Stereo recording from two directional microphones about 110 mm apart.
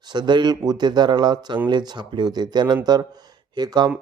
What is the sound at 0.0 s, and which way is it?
Speech, 40° right (ahead or behind).